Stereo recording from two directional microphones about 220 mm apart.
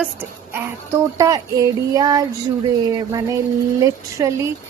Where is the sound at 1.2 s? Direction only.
15° right (ahead or behind).